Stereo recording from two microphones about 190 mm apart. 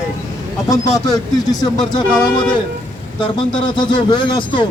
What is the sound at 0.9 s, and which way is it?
Speech, 20° left (ahead or behind).